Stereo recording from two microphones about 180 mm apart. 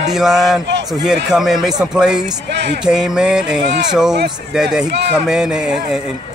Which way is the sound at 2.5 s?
70° right (ahead or behind).